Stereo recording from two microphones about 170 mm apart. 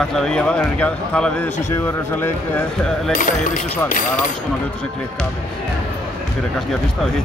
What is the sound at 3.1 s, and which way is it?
Speech, 50° left (ahead or behind).